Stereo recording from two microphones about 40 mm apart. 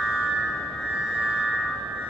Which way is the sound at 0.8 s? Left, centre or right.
Right.